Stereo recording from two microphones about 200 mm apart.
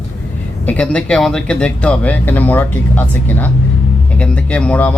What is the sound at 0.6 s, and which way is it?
Speech, 5° left (ahead or behind).